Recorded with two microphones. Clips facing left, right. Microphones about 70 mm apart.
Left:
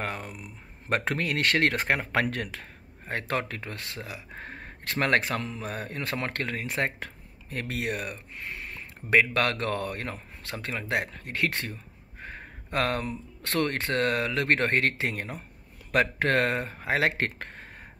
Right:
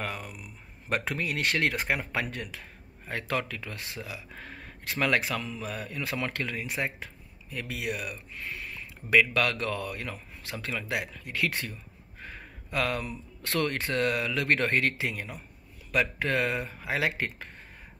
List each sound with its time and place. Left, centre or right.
0.0 s speech: left
1.1 s speech: left
2.1 s speech: left
3.1 s speech: left
3.7 s speech: centre
4.0 s speech: left